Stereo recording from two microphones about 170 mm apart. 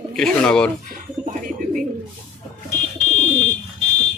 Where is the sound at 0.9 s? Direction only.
50° right (ahead or behind).